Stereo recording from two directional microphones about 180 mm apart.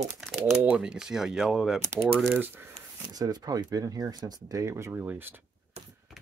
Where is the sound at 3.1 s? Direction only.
20° right (ahead or behind).